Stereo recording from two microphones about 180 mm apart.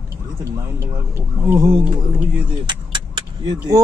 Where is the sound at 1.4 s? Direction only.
20° right (ahead or behind).